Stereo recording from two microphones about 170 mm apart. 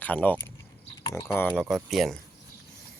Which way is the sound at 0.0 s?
10° left (ahead or behind).